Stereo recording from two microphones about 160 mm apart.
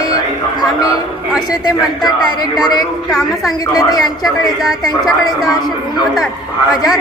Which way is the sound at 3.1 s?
Centre (ahead or behind).